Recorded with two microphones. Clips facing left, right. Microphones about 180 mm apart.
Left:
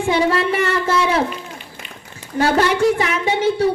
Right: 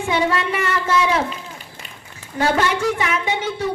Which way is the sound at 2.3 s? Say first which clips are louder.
Left 3 dB; 30° left (ahead or behind).